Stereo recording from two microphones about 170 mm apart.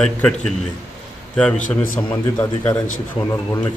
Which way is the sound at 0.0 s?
5° left (ahead or behind).